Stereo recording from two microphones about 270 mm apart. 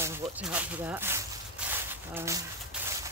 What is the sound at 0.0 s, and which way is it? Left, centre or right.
Speech, centre.